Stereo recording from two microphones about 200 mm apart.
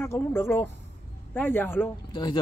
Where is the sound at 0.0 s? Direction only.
10° left (ahead or behind).